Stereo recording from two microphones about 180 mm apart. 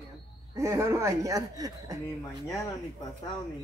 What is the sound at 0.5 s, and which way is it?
Speech, 15° right (ahead or behind).